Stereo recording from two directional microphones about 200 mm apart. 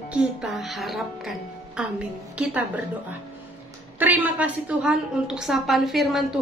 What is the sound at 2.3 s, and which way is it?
Speech, 5° right (ahead or behind).